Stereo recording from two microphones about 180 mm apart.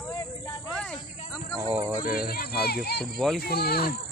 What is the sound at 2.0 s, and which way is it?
Speech, 55° left (ahead or behind).